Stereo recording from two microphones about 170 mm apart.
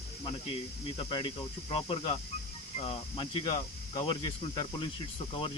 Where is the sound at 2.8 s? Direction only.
30° left (ahead or behind).